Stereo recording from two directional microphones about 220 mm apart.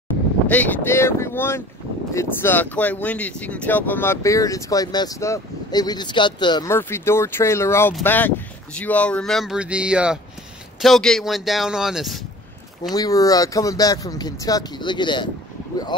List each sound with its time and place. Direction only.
0.5 s speech: 10° left (ahead or behind)
12.9 s speech: 15° left (ahead or behind)